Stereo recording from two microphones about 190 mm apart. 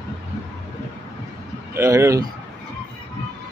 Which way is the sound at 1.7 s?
15° right (ahead or behind).